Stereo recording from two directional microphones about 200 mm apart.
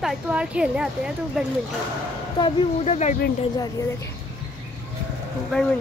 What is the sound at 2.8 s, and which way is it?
Speech, 35° left (ahead or behind).